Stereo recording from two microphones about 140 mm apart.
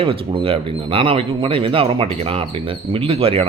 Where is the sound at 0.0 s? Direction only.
40° right (ahead or behind).